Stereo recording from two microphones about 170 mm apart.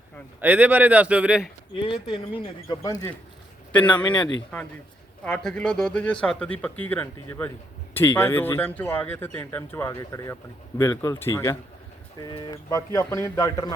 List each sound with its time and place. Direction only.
0.4 s speech: 10° right (ahead or behind)
1.9 s speech: 30° left (ahead or behind)
2.4 s speech: 20° left (ahead or behind)
5.2 s speech: 5° left (ahead or behind); by 13.7 s 20° left (ahead or behind)